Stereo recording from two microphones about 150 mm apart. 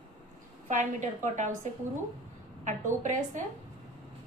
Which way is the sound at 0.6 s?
50° right (ahead or behind).